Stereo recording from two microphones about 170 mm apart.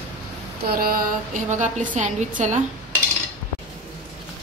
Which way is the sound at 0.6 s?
60° right (ahead or behind).